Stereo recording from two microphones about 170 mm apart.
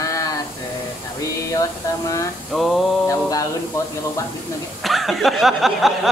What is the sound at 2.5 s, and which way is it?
Speech, centre (ahead or behind).